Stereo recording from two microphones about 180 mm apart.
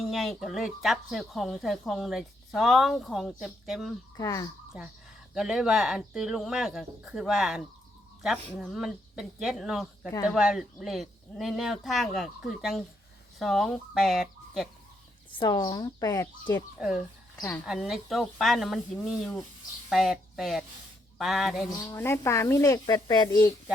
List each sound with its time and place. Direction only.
0.0 s speech: centre (ahead or behind)
4.2 s speech: 15° left (ahead or behind)
4.7 s speech: 5° right (ahead or behind)
15.4 s speech: 20° left (ahead or behind)
16.7 s speech: centre (ahead or behind)
21.7 s speech: 15° left (ahead or behind)